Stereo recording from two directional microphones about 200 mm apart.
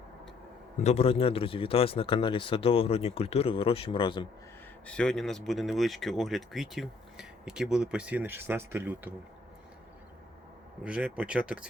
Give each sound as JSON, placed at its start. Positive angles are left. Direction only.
{"t": 0.8, "sound": "speech", "side_deg": 30}
{"t": 4.9, "sound": "speech", "side_deg": 5}
{"t": 10.8, "sound": "speech", "side_deg": -5}